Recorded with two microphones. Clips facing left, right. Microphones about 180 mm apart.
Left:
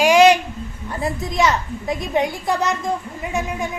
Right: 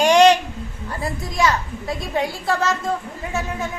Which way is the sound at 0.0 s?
10° left (ahead or behind).